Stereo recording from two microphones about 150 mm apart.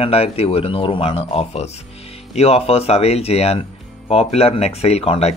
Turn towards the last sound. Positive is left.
turn(degrees=40)  # may be behind; listen again after turning